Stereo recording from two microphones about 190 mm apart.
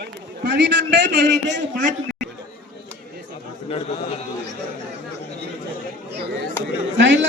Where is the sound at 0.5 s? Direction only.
65° right (ahead or behind).